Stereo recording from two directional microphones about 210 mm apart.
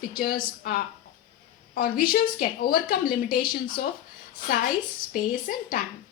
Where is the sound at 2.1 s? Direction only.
45° left (ahead or behind).